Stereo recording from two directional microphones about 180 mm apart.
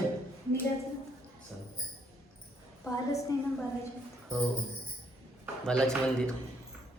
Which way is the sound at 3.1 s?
15° left (ahead or behind).